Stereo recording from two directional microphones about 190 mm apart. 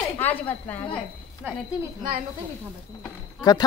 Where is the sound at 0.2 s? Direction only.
10° left (ahead or behind).